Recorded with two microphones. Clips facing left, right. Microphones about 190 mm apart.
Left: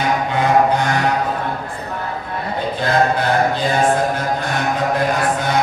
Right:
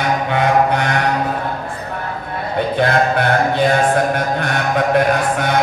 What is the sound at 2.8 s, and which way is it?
Mantra, 65° right (ahead or behind).